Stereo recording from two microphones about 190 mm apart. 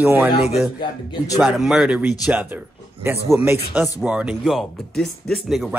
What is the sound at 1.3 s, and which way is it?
Speech, 5° right (ahead or behind).